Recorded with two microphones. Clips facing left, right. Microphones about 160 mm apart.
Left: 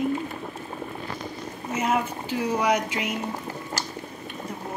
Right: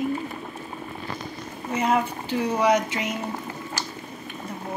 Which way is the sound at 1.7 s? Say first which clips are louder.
Right 2 dB; 10° left (ahead or behind).